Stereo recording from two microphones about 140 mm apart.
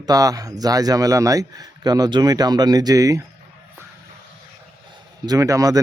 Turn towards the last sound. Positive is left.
turn(degrees=-25)  # may be behind; listen again after turning